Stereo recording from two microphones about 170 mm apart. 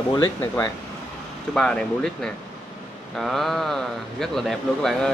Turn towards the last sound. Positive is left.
turn(degrees=0)  # may be behind; listen again after turning